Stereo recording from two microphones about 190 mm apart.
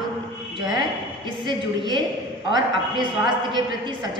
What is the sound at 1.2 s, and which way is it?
A woman's voice, 25° right (ahead or behind).